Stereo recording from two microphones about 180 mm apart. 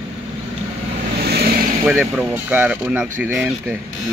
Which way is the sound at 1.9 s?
10° right (ahead or behind).